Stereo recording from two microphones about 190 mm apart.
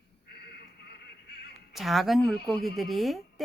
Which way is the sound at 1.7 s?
Centre (ahead or behind).